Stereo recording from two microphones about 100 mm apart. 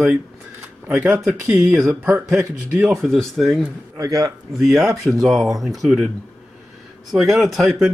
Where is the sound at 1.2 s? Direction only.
Centre (ahead or behind).